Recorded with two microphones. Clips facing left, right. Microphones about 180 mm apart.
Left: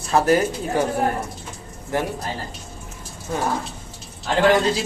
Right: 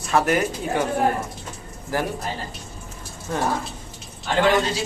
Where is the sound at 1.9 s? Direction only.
25° left (ahead or behind).